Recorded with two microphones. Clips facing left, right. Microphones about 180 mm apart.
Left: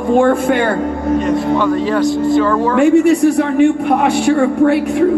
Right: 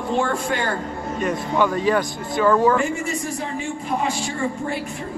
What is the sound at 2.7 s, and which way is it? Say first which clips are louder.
A man's voice: left 14 dB; 70° left (ahead or behind).